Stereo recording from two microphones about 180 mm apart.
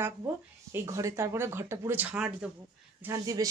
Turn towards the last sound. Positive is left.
turn(degrees=-20)  # may be behind; listen again after turning